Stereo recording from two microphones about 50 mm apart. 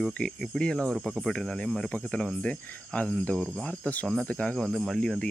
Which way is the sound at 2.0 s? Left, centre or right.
Centre.